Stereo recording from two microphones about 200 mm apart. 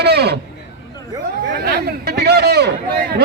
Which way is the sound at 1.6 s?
55° right (ahead or behind).